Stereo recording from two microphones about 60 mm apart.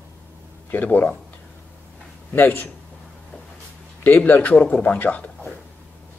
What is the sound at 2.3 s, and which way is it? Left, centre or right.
Speech, left.